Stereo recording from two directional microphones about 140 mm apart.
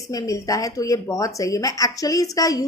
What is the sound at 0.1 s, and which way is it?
A woman's voice, 25° left (ahead or behind).